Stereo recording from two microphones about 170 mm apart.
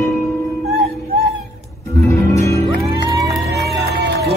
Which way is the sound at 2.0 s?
15° left (ahead or behind).